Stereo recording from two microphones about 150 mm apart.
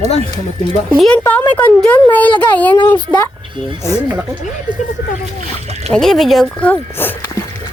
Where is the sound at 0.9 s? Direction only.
Centre (ahead or behind).